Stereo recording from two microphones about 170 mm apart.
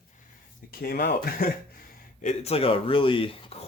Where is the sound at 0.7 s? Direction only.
65° left (ahead or behind).